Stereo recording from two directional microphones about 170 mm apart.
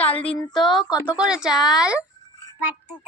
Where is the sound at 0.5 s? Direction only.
Centre (ahead or behind).